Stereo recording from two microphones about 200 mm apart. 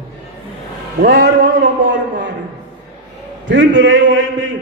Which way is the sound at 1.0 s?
60° right (ahead or behind).